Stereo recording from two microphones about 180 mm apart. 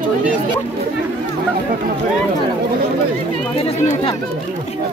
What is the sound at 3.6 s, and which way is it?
Speech, 30° left (ahead or behind).